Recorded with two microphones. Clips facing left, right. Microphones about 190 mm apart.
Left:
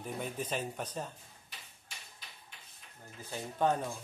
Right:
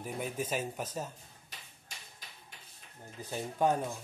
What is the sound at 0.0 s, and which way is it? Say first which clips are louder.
Speech: right 2 dB; 5° right (ahead or behind).